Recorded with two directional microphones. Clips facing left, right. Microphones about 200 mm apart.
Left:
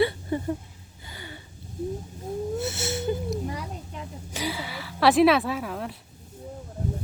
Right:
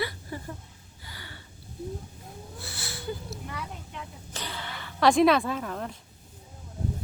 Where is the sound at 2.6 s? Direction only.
25° left (ahead or behind).